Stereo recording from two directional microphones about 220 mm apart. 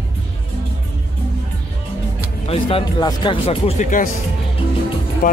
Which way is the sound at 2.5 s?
25° left (ahead or behind).